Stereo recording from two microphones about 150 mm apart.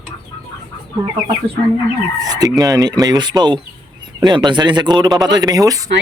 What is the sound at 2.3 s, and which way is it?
Speech, 25° right (ahead or behind).